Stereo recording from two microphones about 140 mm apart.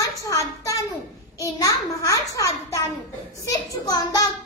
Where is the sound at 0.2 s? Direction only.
25° left (ahead or behind).